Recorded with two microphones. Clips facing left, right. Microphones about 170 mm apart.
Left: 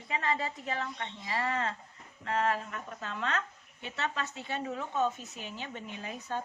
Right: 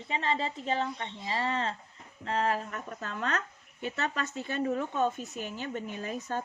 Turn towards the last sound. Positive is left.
turn(degrees=-45)  # may be behind; listen again after turning